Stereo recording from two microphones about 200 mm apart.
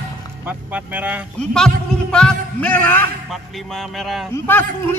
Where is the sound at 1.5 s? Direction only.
5° left (ahead or behind).